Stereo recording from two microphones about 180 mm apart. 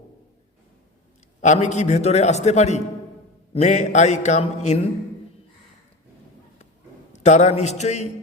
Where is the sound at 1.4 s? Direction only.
40° left (ahead or behind).